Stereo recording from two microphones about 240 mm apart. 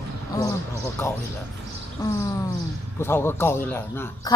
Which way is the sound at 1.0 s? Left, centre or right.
Centre.